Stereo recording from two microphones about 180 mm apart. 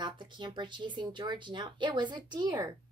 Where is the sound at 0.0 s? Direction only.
25° right (ahead or behind).